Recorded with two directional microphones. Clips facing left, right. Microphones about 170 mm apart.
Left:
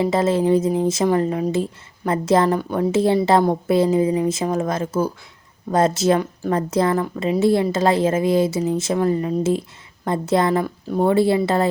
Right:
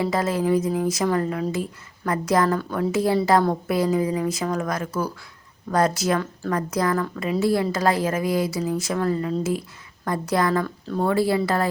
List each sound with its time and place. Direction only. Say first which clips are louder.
0.0 s a woman's voice: left 5 dB; 25° left (ahead or behind)